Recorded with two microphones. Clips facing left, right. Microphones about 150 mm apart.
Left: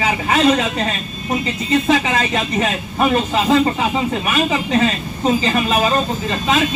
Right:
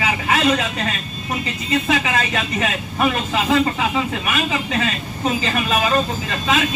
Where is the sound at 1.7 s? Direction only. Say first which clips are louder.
Left 4 dB; 30° left (ahead or behind).